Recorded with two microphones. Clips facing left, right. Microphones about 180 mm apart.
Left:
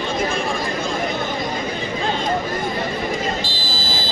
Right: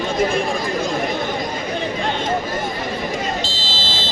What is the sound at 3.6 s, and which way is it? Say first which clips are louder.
Vehicle: even; 25° right (ahead or behind).